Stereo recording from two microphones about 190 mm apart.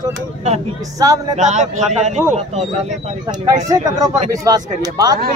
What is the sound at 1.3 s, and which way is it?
Speech, 40° right (ahead or behind).